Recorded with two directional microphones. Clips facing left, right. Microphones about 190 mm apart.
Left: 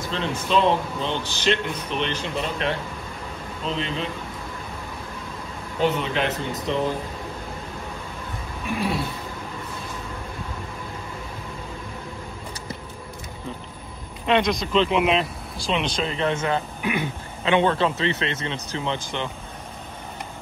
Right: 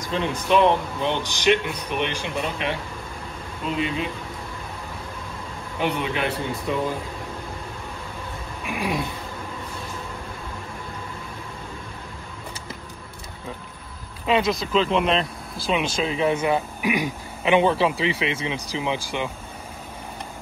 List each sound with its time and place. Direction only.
0.0 s speech: 15° right (ahead or behind)
5.8 s speech: 10° right (ahead or behind)
8.7 s speech: 15° right (ahead or behind)
14.2 s speech: 5° right (ahead or behind)